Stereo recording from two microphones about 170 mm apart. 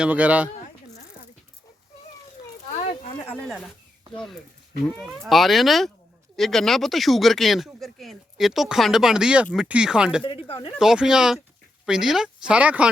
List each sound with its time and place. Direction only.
0.0 s speech: 10° right (ahead or behind)
4.9 s speech: centre (ahead or behind)
10.2 s speech: 30° left (ahead or behind)
10.8 s speech: 5° right (ahead or behind)